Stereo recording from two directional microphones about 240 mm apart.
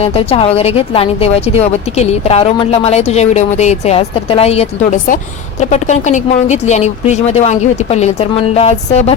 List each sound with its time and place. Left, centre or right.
0.0 s speech: left